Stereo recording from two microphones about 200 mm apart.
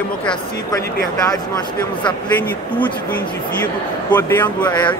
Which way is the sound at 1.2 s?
20° left (ahead or behind).